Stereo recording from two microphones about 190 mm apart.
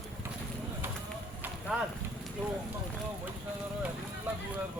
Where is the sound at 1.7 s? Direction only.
5° right (ahead or behind).